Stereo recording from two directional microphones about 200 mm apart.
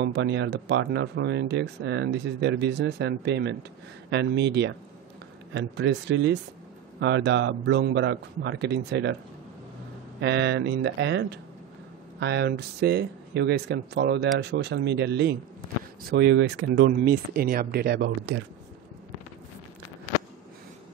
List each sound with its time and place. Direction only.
0.0 s speech: 60° right (ahead or behind)
10.2 s speech: 60° right (ahead or behind)